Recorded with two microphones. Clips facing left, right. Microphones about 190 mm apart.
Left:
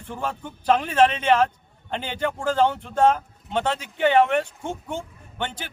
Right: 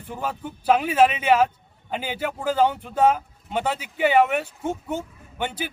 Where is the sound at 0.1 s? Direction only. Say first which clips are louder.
Even; 10° right (ahead or behind).